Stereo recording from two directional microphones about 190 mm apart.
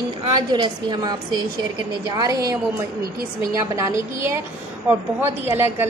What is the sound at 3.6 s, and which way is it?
A woman's voice, 15° right (ahead or behind).